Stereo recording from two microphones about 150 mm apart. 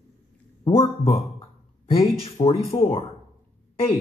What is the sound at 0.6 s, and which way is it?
Speech, 40° left (ahead or behind).